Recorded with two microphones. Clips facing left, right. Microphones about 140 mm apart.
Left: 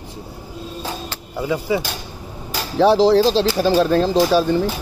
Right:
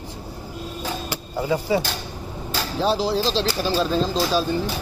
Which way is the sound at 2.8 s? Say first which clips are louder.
Left 9 dB; 85° left.